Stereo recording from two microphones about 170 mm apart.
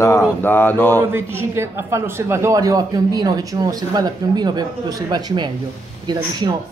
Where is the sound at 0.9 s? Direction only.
15° right (ahead or behind).